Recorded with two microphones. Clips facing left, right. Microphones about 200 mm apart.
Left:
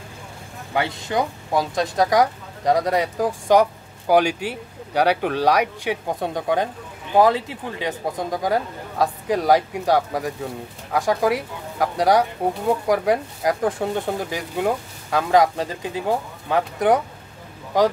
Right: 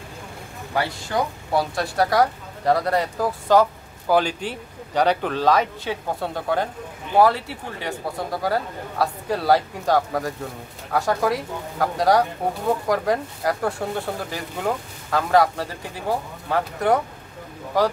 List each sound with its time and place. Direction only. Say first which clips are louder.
0.7 s speech: left 1 dB; 20° left (ahead or behind)